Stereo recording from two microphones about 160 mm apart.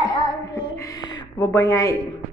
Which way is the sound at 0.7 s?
25° left (ahead or behind).